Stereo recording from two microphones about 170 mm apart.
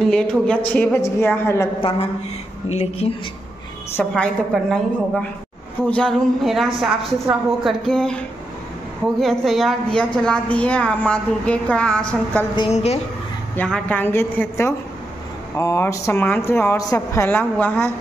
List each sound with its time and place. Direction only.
0.0 s a woman's voice: 5° left (ahead or behind)
1.8 s a woman's voice: 30° left (ahead or behind)
3.9 s a woman's voice: 5° left (ahead or behind)
9.2 s a woman's voice: centre (ahead or behind)
12.5 s a woman's voice: 35° left (ahead or behind)
13.6 s speech: 5° left (ahead or behind)